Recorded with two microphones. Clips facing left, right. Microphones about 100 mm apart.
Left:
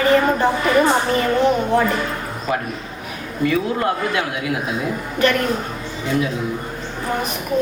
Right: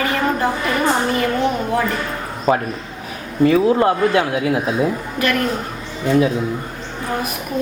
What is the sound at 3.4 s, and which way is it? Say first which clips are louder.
Speech: right 6 dB; 30° right (ahead or behind).